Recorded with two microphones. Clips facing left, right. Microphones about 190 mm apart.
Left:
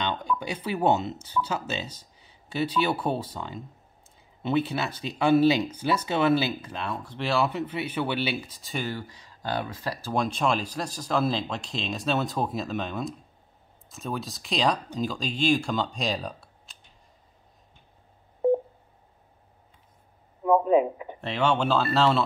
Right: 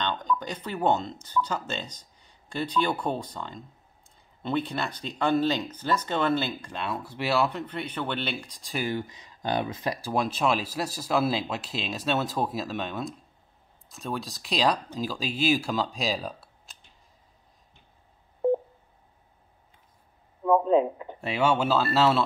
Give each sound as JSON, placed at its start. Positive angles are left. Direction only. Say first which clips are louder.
{"t": 0.0, "sound": "speech", "louder": "even", "side_deg": 10}
{"t": 8.8, "sound": "speech", "louder": "right 3 dB", "side_deg": -20}
{"t": 10.1, "sound": "speech", "louder": "left 1 dB", "side_deg": -5}
{"t": 20.4, "sound": "a man's voice", "louder": "left 1 dB", "side_deg": 10}
{"t": 21.2, "sound": "speech", "louder": "even", "side_deg": -10}